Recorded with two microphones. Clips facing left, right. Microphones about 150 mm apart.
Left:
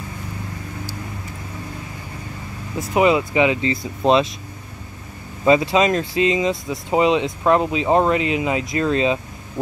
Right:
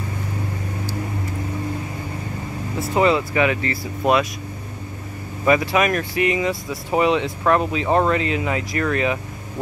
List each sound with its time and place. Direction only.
2.8 s speech: 15° left (ahead or behind)
5.4 s speech: 25° left (ahead or behind)